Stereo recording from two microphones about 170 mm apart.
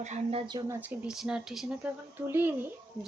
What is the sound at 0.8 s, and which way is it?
Speech, 5° right (ahead or behind).